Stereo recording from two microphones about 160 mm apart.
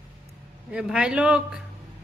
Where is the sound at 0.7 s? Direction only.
5° right (ahead or behind).